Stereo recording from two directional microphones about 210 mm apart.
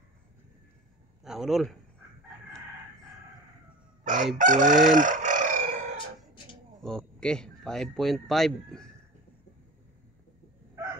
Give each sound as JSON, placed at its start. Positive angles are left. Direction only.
{"t": 1.2, "sound": "a man's voice", "side_deg": 0}
{"t": 4.4, "sound": "chicken", "side_deg": -40}
{"t": 6.8, "sound": "speech", "side_deg": 5}